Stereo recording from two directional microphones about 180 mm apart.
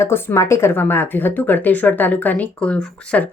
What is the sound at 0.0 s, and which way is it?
Speech, 15° left (ahead or behind).